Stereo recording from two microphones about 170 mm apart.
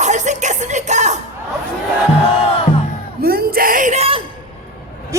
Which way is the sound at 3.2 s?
60° right (ahead or behind).